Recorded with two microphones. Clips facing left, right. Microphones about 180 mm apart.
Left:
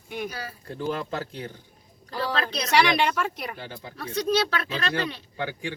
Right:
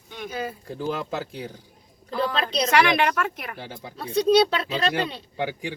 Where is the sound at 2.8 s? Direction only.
5° right (ahead or behind).